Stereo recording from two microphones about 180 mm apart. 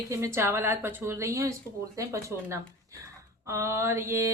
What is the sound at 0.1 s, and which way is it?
Speech, 15° right (ahead or behind).